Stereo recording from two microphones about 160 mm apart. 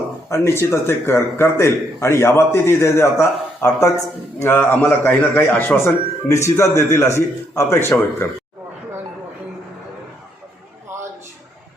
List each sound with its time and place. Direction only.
0.3 s a man's voice: 15° left (ahead or behind)